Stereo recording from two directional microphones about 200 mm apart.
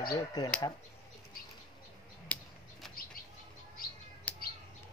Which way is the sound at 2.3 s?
10° left (ahead or behind).